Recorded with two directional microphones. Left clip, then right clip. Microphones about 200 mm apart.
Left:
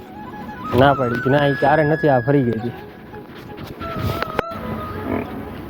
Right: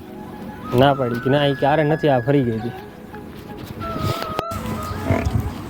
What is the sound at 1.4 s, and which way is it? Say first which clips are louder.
Speech: left 2 dB; 15° left (ahead or behind).